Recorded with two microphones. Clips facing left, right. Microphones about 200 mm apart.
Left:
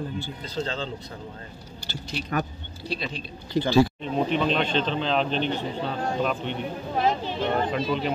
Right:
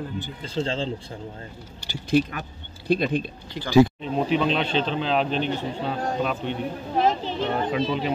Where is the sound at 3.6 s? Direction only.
40° left (ahead or behind).